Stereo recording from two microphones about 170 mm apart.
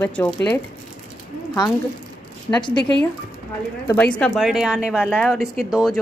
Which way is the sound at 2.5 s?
25° left (ahead or behind).